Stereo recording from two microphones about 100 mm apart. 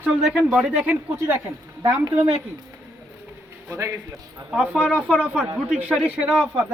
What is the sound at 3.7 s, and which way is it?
Speech, 30° right (ahead or behind).